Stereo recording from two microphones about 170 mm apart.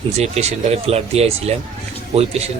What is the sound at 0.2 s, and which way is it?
Speech, 40° right (ahead or behind).